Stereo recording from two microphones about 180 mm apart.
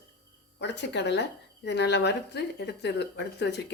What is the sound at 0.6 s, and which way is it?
A woman's voice, 75° left (ahead or behind).